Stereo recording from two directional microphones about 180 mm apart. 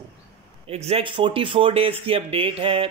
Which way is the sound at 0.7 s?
35° right (ahead or behind).